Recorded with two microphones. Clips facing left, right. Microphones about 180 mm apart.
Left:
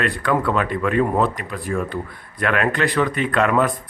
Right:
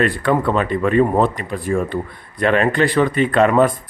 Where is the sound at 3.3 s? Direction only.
30° right (ahead or behind).